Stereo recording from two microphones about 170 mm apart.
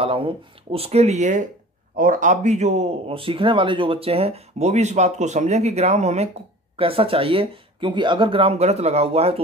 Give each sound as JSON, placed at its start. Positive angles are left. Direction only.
{"t": 0.0, "sound": "speech", "side_deg": -30}